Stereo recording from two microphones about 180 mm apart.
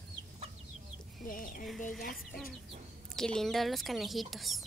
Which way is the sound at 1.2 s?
50° left (ahead or behind).